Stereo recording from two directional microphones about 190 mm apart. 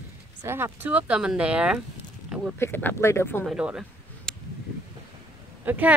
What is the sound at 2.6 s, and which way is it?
Speech, 10° left (ahead or behind).